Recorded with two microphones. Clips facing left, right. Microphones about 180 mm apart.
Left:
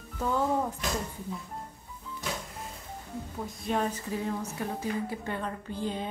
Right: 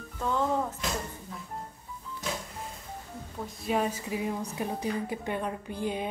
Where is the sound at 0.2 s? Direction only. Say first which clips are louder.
Left 1 dB; 10° left (ahead or behind).